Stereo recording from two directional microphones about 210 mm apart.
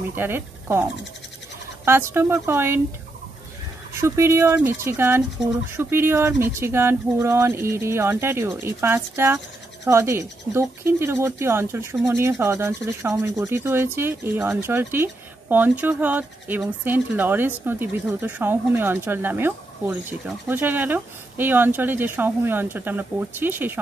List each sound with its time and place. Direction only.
0.1 s speech: 10° right (ahead or behind)
1.9 s speech: 10° right (ahead or behind)
3.9 s speech: 15° right (ahead or behind)